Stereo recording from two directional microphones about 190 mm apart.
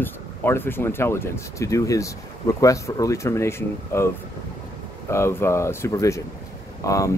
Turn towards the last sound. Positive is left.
turn(degrees=15)  # may be behind; listen again after turning